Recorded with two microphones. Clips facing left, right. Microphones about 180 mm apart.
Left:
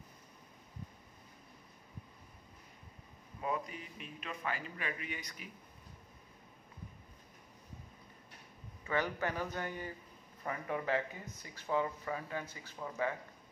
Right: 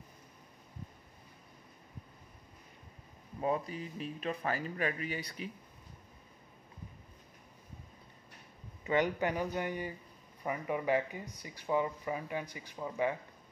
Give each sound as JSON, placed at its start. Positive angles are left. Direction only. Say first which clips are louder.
{"t": 3.3, "sound": "speech", "louder": "right 5 dB", "side_deg": -35}
{"t": 8.8, "sound": "speech", "louder": "right 5 dB", "side_deg": -20}